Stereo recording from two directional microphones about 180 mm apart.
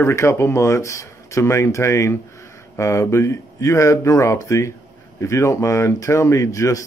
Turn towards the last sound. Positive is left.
turn(degrees=20)  # may be behind; listen again after turning